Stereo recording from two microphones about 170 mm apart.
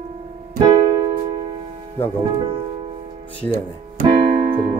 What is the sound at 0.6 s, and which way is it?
Keyboard, 25° right (ahead or behind).